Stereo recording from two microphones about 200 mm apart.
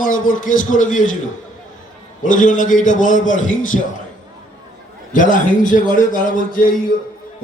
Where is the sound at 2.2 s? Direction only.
40° left (ahead or behind).